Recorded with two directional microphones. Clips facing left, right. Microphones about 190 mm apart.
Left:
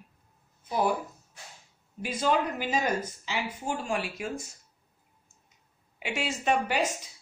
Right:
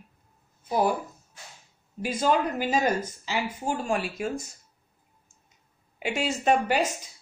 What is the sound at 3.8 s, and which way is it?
Speech, 45° right (ahead or behind).